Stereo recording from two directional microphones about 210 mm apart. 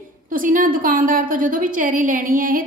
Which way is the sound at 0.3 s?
40° right (ahead or behind).